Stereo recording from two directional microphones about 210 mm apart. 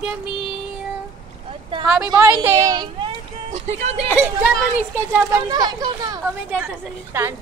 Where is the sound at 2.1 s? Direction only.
5° right (ahead or behind).